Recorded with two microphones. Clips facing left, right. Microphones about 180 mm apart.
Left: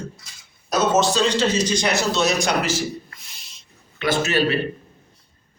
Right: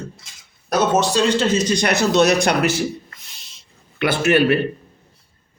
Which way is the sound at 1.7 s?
60° right (ahead or behind).